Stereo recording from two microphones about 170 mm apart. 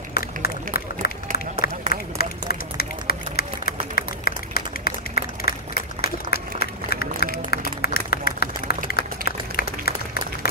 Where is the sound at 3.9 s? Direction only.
65° left (ahead or behind).